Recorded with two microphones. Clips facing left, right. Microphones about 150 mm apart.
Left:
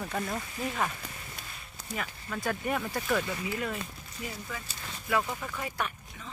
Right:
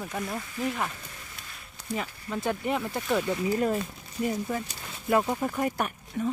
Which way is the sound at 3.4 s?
40° right (ahead or behind).